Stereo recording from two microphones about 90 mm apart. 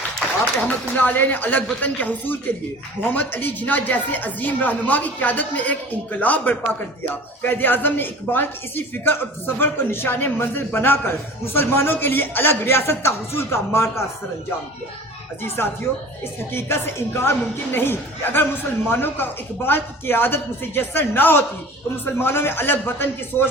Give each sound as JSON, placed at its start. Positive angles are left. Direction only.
{"t": 0.9, "sound": "a woman's voice", "side_deg": 20}
{"t": 15.6, "sound": "a woman's voice", "side_deg": 25}